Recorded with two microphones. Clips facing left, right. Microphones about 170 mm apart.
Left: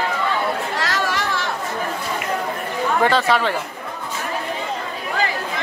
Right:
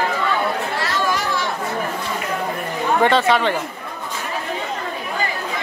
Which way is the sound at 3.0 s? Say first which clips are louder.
Right 2 dB; centre (ahead or behind).